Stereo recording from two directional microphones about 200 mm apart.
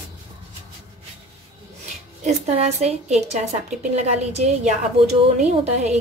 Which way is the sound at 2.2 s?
35° right (ahead or behind).